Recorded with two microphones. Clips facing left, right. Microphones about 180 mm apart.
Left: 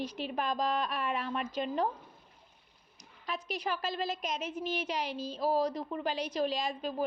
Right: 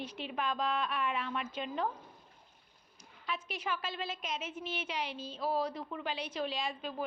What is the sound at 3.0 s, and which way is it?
A woman's voice, 40° left (ahead or behind).